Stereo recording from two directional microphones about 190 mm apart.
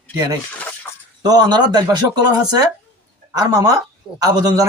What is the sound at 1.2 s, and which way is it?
Speech, 20° right (ahead or behind).